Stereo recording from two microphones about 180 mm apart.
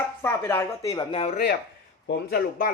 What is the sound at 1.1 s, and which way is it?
Speech, 35° left (ahead or behind).